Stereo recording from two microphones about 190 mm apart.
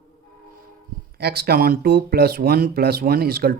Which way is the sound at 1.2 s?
55° right (ahead or behind).